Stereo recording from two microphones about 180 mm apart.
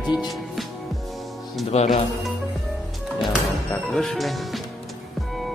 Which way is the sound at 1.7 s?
35° left (ahead or behind).